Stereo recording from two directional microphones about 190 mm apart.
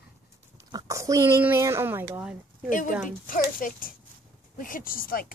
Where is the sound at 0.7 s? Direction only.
20° right (ahead or behind).